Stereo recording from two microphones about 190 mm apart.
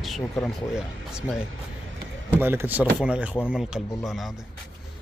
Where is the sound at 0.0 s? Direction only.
Centre (ahead or behind).